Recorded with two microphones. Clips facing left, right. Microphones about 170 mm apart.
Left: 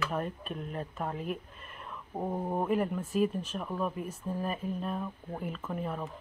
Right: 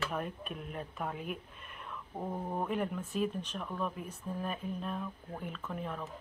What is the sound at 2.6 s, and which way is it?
Speech, 5° left (ahead or behind).